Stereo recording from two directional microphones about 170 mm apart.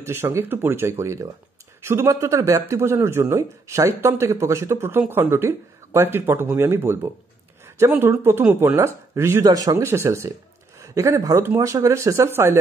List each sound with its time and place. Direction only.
0.0 s speech: 15° right (ahead or behind)